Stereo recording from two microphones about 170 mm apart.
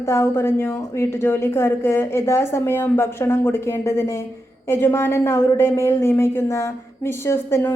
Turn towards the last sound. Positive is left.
turn(degrees=15)  # may be behind; listen again after turning